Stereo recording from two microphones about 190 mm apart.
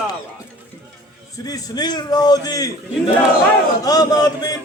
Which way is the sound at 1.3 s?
20° left (ahead or behind).